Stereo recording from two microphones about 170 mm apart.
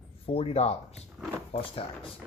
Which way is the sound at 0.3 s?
35° left (ahead or behind).